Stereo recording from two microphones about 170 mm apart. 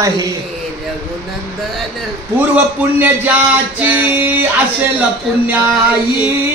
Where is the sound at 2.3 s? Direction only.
10° right (ahead or behind).